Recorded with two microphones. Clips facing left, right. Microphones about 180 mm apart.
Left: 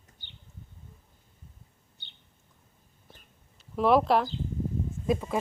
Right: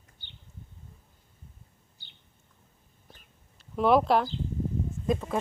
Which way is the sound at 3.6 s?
Centre (ahead or behind).